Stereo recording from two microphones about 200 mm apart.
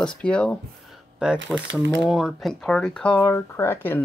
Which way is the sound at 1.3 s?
65° right (ahead or behind).